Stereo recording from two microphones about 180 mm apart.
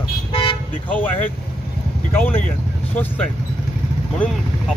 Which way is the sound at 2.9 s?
10° left (ahead or behind).